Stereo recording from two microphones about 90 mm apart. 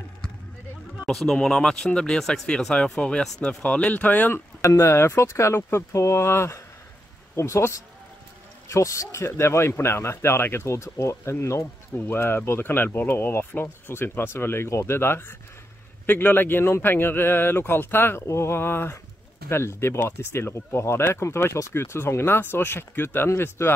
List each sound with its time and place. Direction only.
1.0 s speech: 5° left (ahead or behind)
4.6 s speech: 30° left (ahead or behind)